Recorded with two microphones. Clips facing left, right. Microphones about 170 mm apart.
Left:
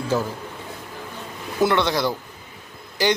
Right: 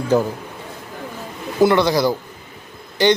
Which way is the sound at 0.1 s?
15° right (ahead or behind).